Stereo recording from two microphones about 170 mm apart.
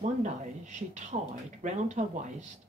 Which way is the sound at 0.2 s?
45° right (ahead or behind).